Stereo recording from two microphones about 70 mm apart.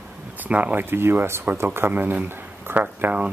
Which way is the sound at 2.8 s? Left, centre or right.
Right.